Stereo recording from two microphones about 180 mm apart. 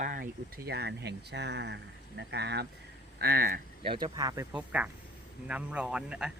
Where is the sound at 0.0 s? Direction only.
50° right (ahead or behind); by 2.6 s 70° right (ahead or behind).